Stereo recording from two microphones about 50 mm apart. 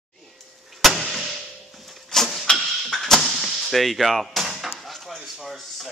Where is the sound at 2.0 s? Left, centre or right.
Centre.